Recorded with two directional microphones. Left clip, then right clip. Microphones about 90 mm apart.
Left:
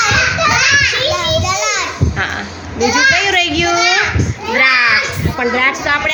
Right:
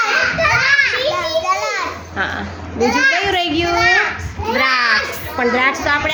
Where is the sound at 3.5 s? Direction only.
10° right (ahead or behind).